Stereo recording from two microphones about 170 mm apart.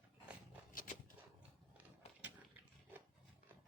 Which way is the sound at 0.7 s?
55° left (ahead or behind).